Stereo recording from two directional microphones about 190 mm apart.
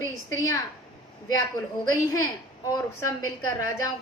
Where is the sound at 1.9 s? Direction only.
15° left (ahead or behind).